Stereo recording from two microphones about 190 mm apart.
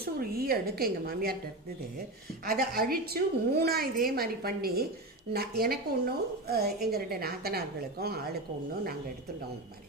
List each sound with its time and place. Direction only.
0.0 s a woman's voice: 50° right (ahead or behind)
2.4 s a woman's voice: 50° right (ahead or behind)